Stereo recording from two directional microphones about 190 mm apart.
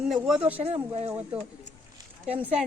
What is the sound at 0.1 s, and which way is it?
Speech, 5° right (ahead or behind).